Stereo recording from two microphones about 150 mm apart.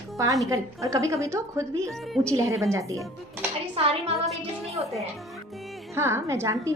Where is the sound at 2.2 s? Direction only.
20° right (ahead or behind).